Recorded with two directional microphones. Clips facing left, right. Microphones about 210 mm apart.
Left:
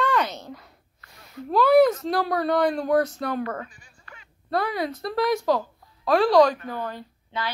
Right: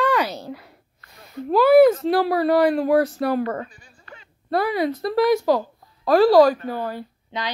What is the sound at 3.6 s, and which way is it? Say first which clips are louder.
Bleat: right 4 dB; 35° right (ahead or behind).